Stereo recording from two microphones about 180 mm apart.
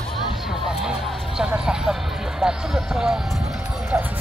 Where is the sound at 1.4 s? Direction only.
5° right (ahead or behind).